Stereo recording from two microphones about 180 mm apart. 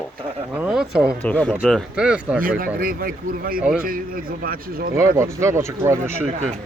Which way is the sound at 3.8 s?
50° right (ahead or behind).